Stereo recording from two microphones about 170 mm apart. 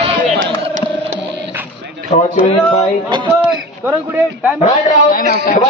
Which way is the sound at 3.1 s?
30° right (ahead or behind).